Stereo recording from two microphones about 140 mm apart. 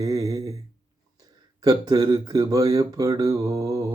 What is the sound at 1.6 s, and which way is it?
Speech, 25° right (ahead or behind).